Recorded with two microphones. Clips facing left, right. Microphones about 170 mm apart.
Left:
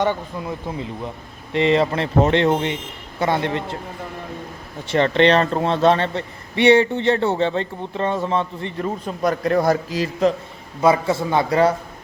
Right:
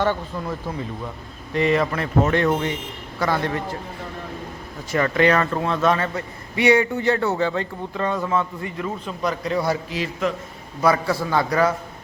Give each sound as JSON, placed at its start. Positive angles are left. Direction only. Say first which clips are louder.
{"t": 0.0, "sound": "a man's voice", "louder": "left 1 dB", "side_deg": 15}
{"t": 4.9, "sound": "a man's voice", "louder": "left 3 dB", "side_deg": 30}
{"t": 8.8, "sound": "a man's voice", "louder": "left 4 dB", "side_deg": 45}
{"t": 10.8, "sound": "a man's voice", "louder": "left 3 dB", "side_deg": 25}